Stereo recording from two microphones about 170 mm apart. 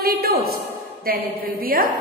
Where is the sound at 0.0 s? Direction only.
65° right (ahead or behind).